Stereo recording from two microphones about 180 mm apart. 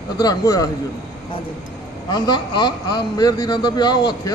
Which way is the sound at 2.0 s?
20° left (ahead or behind).